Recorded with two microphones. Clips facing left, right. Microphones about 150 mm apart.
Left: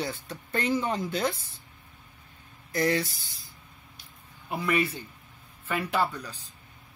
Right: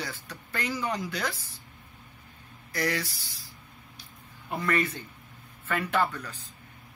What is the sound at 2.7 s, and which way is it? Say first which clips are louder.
Speech: left 4 dB; 20° left (ahead or behind).